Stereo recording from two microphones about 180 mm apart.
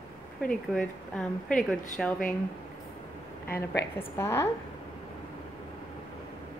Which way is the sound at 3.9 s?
15° left (ahead or behind).